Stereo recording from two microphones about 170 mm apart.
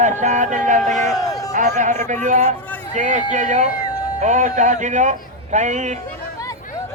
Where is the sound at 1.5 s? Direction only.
50° right (ahead or behind).